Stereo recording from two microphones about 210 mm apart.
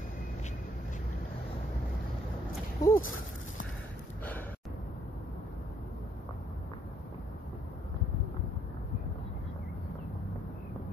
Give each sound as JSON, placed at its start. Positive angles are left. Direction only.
{"t": 2.8, "sound": "speech", "side_deg": 20}